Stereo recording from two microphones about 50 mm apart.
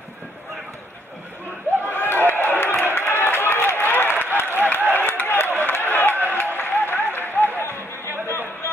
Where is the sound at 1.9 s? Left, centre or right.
Left.